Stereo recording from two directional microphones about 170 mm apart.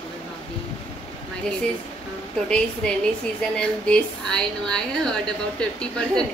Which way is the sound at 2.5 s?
5° left (ahead or behind).